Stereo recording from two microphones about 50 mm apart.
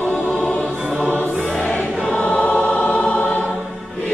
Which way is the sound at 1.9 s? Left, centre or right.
Centre.